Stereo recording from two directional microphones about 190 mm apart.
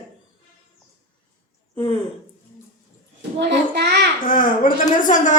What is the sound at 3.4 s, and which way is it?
Speech, 60° right (ahead or behind).